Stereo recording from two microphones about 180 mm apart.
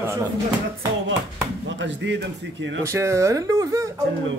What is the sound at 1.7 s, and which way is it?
A man's voice, 85° right.